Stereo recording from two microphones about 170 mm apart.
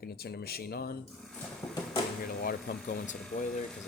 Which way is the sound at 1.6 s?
20° left (ahead or behind).